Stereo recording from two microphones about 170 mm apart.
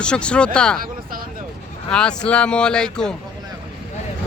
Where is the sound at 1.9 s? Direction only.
5° left (ahead or behind).